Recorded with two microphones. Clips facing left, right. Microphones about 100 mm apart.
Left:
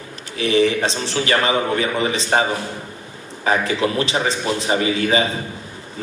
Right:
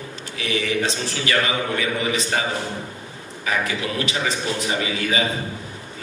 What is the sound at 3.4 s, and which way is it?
A man's voice, 30° left (ahead or behind).